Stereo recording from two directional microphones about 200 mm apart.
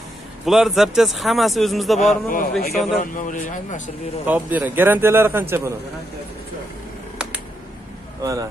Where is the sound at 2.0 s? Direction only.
40° left (ahead or behind).